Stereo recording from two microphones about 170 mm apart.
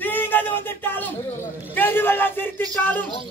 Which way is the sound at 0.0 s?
10° left (ahead or behind).